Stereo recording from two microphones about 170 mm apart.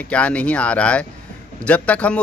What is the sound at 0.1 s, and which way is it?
Speech, 5° left (ahead or behind).